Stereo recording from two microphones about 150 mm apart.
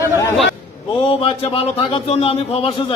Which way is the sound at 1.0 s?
35° left (ahead or behind).